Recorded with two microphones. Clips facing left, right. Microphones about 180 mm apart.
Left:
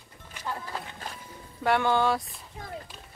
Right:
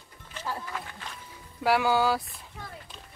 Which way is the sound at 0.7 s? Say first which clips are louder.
Left 1 dB; 40° left (ahead or behind).